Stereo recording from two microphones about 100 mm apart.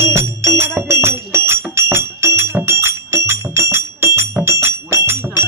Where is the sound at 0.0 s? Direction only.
30° right (ahead or behind).